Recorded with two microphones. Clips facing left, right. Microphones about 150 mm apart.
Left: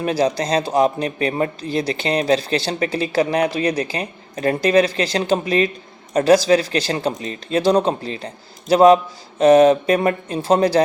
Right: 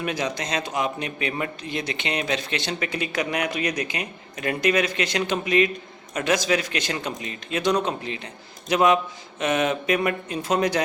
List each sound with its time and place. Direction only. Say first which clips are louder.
0.0 s speech: left 8 dB; 35° left (ahead or behind)